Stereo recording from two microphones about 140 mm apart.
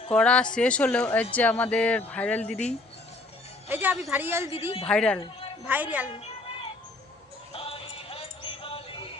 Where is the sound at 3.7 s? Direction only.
15° right (ahead or behind).